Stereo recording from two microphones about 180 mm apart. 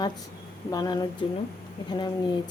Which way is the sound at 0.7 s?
20° left (ahead or behind).